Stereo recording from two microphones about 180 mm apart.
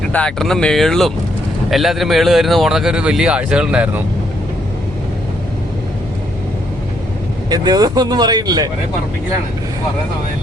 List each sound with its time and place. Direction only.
0.1 s speech: 5° left (ahead or behind)
7.5 s speech: 20° right (ahead or behind)